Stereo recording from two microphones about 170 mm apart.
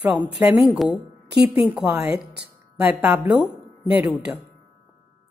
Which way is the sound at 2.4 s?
5° right (ahead or behind).